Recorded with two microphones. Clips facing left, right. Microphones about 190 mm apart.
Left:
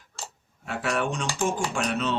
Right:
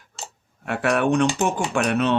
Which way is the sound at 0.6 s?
60° right (ahead or behind).